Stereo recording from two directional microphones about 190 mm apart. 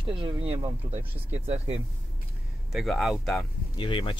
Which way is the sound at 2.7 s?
Centre (ahead or behind).